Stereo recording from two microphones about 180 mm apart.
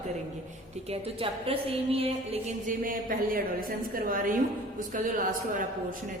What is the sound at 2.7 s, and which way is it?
A woman's voice, 50° right (ahead or behind).